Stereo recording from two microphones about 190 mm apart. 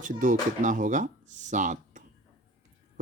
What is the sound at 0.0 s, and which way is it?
Speech, 45° right (ahead or behind).